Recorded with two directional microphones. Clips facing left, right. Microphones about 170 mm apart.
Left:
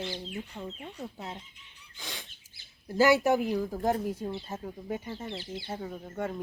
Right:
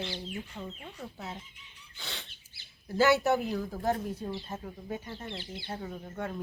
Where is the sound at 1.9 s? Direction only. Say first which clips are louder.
Left 1 dB; 10° left (ahead or behind).